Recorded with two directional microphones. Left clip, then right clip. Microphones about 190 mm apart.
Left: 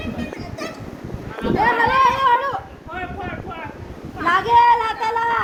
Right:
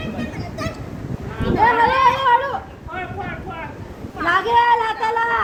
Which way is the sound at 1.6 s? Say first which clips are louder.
Right 2 dB; 45° left (ahead or behind).